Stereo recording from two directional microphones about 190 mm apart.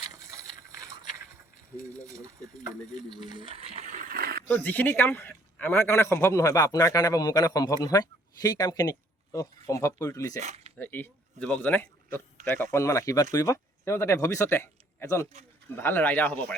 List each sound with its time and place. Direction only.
0.1 s a sound: 15° right (ahead or behind)
2.0 s speech: 15° right (ahead or behind); by 4.4 s 55° right (ahead or behind)
4.5 s a man's voice: 10° left (ahead or behind)
10.4 s speech: 35° right (ahead or behind)
10.8 s a man's voice: 10° left (ahead or behind)